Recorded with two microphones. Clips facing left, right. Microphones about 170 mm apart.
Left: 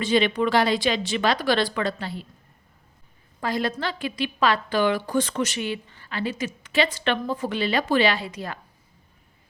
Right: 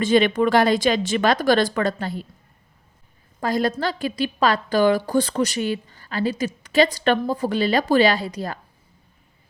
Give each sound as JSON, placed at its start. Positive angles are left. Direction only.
{"t": 0.0, "sound": "speech", "side_deg": -50}
{"t": 3.4, "sound": "a woman's voice", "side_deg": -40}